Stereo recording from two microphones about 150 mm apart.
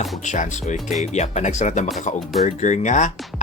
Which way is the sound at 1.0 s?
50° left (ahead or behind).